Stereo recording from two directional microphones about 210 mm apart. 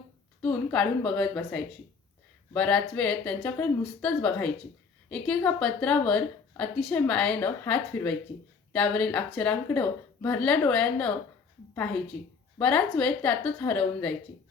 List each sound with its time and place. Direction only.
0.4 s a woman's voice: 5° left (ahead or behind)